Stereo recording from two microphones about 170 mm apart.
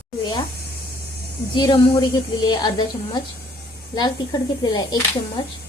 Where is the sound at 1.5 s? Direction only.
25° left (ahead or behind).